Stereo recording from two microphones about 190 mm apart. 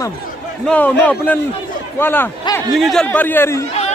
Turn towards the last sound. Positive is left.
turn(degrees=10)  # may be behind; listen again after turning